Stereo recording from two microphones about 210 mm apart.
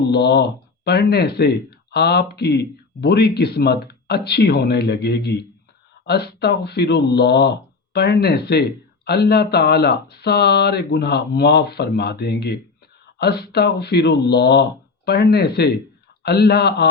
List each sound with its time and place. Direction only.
0.1 s speech: 50° left (ahead or behind)